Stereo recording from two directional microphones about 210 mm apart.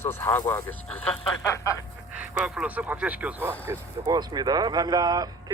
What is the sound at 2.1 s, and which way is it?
Speech, 5° right (ahead or behind).